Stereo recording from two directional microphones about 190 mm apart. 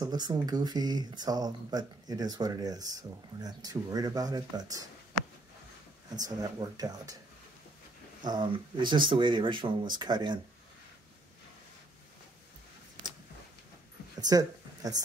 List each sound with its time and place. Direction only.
0.0 s speech: 20° right (ahead or behind)
6.1 s speech: 20° right (ahead or behind)
8.2 s speech: 25° right (ahead or behind)
14.2 s speech: 20° right (ahead or behind)